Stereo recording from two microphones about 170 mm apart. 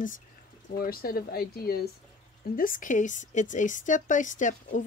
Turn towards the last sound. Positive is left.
turn(degrees=45)  # may be behind; listen again after turning